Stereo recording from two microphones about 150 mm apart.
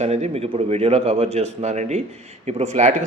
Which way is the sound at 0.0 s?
45° right (ahead or behind).